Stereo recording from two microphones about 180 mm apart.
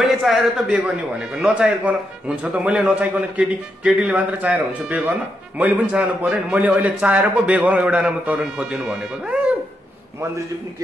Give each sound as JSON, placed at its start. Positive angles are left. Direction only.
{"t": 0.0, "sound": "a man's voice", "side_deg": 0}